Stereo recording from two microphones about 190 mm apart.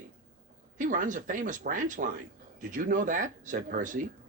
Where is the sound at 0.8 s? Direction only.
45° right (ahead or behind).